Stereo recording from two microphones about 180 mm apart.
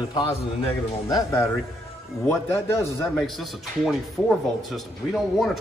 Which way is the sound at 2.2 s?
15° left (ahead or behind).